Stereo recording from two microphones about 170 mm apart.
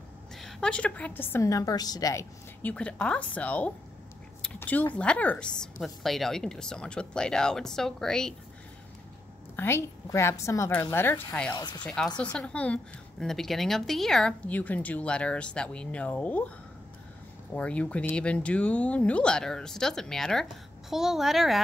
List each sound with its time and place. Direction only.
0.4 s speech: 5° left (ahead or behind); by 2.2 s 20° left (ahead or behind)
2.6 s speech: 5° left (ahead or behind)
4.4 s a sound: 10° left (ahead or behind)
4.9 s a woman's voice: 5° left (ahead or behind)
9.6 s speech: 15° left (ahead or behind)
11.5 s speech: 25° left (ahead or behind)
11.8 s a woman's voice: 5° left (ahead or behind)
17.6 s a woman's voice: 5° left (ahead or behind)